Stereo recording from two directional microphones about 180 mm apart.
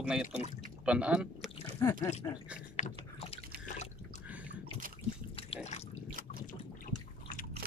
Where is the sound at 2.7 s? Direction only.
40° left (ahead or behind).